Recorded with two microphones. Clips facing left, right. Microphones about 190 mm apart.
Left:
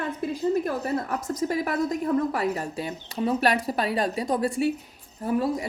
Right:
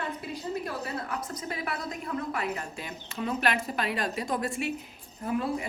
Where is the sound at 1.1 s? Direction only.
40° left (ahead or behind).